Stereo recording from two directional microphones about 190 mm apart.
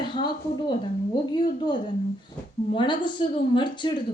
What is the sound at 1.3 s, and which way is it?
A woman's voice, 25° left (ahead or behind).